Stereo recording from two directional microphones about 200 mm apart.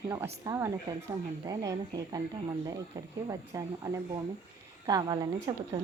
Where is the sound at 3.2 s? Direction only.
15° right (ahead or behind).